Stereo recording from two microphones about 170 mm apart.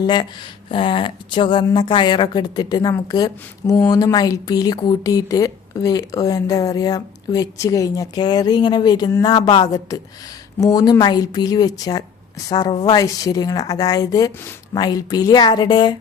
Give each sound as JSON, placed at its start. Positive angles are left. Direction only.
{"t": 0.0, "sound": "a woman's voice", "side_deg": 25}